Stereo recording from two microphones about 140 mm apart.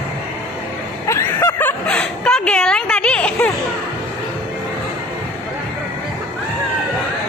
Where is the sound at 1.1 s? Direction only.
25° left (ahead or behind).